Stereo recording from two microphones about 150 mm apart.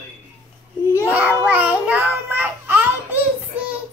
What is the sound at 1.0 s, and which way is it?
Child singing, 10° right (ahead or behind).